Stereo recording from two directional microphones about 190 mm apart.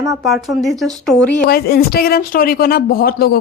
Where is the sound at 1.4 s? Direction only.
55° left (ahead or behind).